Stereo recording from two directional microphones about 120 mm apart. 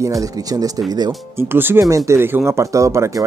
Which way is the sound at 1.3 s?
20° right (ahead or behind).